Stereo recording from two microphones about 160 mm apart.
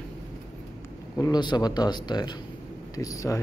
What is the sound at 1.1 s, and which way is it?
Speech, 25° left (ahead or behind).